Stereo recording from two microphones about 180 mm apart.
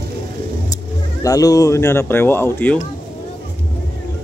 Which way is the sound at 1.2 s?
20° left (ahead or behind).